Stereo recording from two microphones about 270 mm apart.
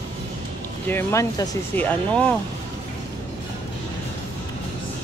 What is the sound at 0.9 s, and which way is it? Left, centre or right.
Speech, centre.